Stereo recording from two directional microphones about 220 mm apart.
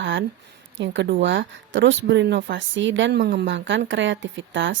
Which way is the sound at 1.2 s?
55° right (ahead or behind).